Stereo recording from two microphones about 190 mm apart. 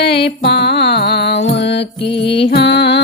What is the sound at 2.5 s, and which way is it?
Music, 60° left (ahead or behind).